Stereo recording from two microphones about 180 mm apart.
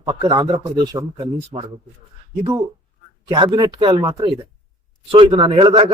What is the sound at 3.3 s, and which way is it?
Speech, 25° right (ahead or behind).